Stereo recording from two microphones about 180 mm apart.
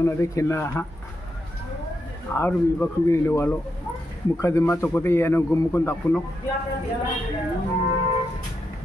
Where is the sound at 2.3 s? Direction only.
10° left (ahead or behind).